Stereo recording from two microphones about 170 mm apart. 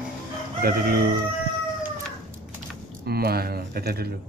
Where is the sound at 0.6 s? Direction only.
60° right (ahead or behind).